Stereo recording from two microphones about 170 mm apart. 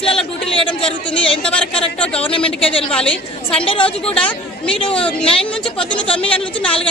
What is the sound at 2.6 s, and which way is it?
A woman's voice, 30° left (ahead or behind).